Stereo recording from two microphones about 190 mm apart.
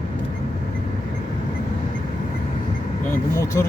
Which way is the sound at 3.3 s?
15° left (ahead or behind).